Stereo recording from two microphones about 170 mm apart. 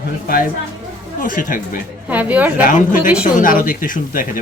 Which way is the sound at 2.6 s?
50° left (ahead or behind).